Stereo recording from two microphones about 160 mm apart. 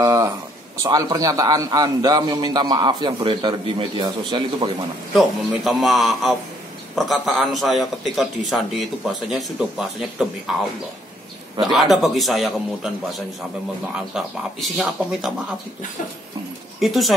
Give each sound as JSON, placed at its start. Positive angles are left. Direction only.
{"t": 0.0, "sound": "a sound", "side_deg": -20}
{"t": 0.8, "sound": "a man's voice", "side_deg": -25}
{"t": 5.1, "sound": "a man's voice", "side_deg": 0}
{"t": 11.6, "sound": "a man's voice", "side_deg": 0}
{"t": 14.1, "sound": "a man's voice", "side_deg": -5}
{"t": 16.8, "sound": "a man's voice", "side_deg": 0}